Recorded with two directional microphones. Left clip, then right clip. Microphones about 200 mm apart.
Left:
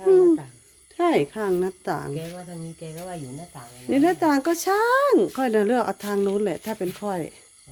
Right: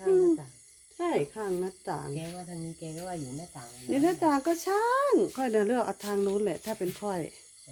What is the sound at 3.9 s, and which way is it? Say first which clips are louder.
Speech: left 6 dB; 30° left (ahead or behind).